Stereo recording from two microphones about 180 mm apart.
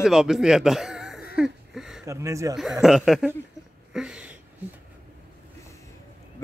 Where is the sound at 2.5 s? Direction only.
Centre (ahead or behind).